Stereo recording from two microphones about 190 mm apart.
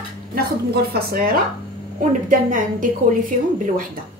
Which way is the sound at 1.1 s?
50° right (ahead or behind).